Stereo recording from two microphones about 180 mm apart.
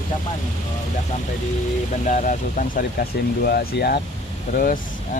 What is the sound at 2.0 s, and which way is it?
Speech, 45° left (ahead or behind).